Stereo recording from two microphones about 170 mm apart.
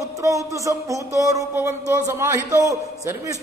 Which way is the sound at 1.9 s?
15° right (ahead or behind).